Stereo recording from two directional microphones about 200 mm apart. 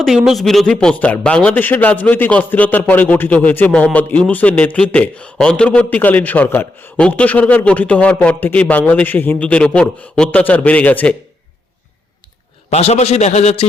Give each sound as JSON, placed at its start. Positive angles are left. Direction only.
{"t": 0.0, "sound": "a man's voice", "side_deg": 0}
{"t": 12.7, "sound": "a man's voice", "side_deg": 35}